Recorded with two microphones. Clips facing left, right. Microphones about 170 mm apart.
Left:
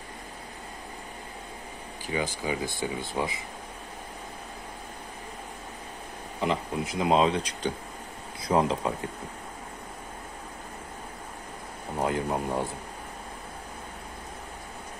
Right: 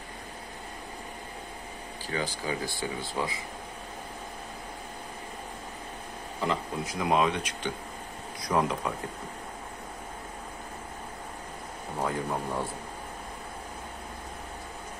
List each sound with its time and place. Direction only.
2.4 s speech: 20° left (ahead or behind)
6.4 s speech: 20° left (ahead or behind)
12.0 s speech: 20° left (ahead or behind)